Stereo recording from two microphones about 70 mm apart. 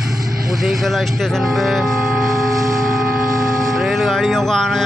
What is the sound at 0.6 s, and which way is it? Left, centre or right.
Speech, centre.